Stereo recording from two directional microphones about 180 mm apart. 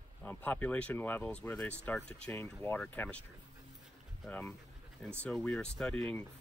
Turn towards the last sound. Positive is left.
turn(degrees=5)  # may be behind; listen again after turning